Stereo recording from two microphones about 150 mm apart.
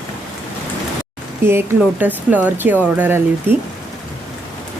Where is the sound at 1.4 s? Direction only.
15° right (ahead or behind).